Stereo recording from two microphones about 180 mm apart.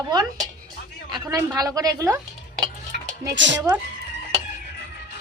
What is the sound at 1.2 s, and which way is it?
Speech, 15° right (ahead or behind).